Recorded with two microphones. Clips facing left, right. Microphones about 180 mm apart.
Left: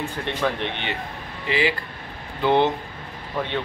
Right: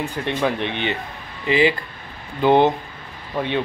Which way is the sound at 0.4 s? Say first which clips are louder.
Right 3 dB; 15° right (ahead or behind).